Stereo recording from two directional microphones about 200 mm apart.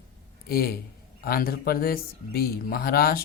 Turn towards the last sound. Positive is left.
turn(degrees=50)  # may be behind; listen again after turning